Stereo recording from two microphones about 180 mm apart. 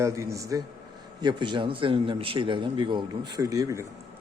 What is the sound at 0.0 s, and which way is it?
A man's voice, 15° right (ahead or behind).